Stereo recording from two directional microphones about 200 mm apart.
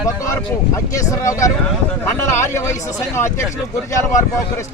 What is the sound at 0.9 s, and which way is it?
Speech, 15° left (ahead or behind).